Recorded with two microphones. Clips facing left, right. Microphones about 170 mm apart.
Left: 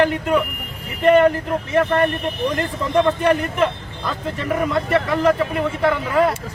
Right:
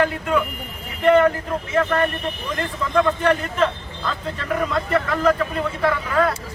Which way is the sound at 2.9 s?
20° left (ahead or behind).